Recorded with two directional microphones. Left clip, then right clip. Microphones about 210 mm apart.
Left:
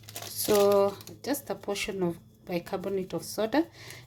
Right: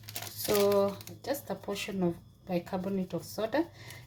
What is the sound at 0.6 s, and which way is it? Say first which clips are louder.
Speech: left 2 dB; 35° left (ahead or behind).